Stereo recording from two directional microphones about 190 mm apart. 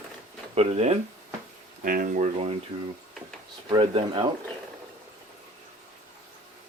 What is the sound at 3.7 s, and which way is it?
Speech, 25° right (ahead or behind).